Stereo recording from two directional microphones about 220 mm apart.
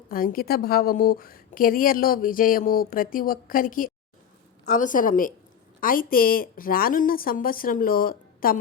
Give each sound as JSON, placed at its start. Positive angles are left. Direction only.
{"t": 0.1, "sound": "a woman's voice", "side_deg": 40}